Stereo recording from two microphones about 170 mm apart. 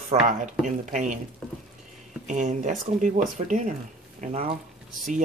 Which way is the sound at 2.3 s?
45° right (ahead or behind).